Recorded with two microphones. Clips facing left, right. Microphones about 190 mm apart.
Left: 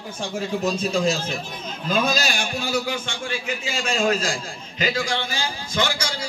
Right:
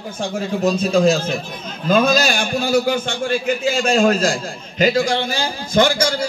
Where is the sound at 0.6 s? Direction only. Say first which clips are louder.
Right 8 dB; 55° right (ahead or behind).